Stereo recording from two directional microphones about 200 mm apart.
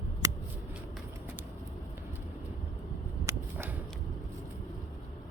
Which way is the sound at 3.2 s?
15° right (ahead or behind).